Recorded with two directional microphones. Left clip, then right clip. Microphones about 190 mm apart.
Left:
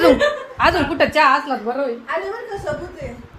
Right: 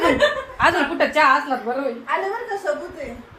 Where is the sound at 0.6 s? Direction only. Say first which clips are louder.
Left 2 dB; 50° left (ahead or behind).